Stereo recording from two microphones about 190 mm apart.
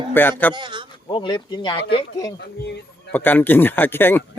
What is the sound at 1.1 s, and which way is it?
Speech, 25° left (ahead or behind).